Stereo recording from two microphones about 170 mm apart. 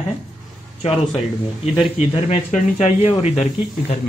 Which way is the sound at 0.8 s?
35° left (ahead or behind).